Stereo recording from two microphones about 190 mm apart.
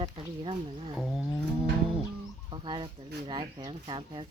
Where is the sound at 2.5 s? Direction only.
25° right (ahead or behind).